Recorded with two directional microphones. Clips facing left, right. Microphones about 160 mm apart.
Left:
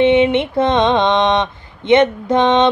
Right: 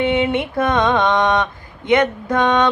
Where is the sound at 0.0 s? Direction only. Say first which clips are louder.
Left 6 dB; 20° left (ahead or behind).